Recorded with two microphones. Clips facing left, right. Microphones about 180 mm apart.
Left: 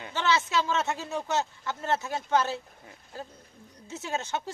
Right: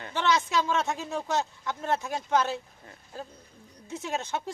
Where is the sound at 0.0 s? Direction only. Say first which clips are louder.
Right 1 dB; 5° left (ahead or behind).